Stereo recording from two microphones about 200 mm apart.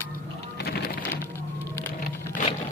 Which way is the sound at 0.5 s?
50° left (ahead or behind).